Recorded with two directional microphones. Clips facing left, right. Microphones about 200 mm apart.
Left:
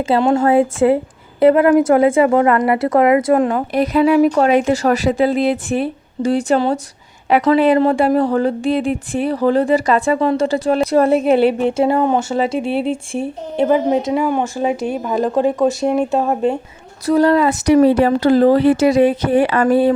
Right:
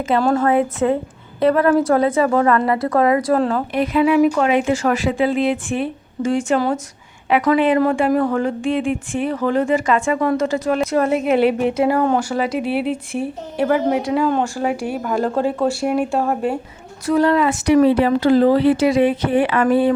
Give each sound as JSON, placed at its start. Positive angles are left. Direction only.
{"t": 0.0, "sound": "speech", "side_deg": 25}
{"t": 3.7, "sound": "speech", "side_deg": 40}
{"t": 17.1, "sound": "speech", "side_deg": 35}